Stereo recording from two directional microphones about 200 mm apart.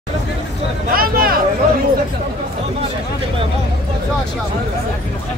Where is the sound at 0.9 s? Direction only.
45° right (ahead or behind).